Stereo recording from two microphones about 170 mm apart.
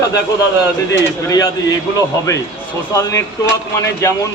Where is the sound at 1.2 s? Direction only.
20° left (ahead or behind).